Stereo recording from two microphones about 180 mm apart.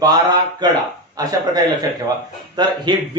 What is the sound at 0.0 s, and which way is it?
Speech, 25° right (ahead or behind).